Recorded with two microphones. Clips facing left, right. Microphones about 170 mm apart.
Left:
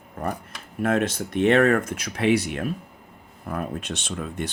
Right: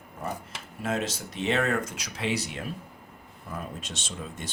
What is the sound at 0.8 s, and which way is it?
Speech, 55° left (ahead or behind).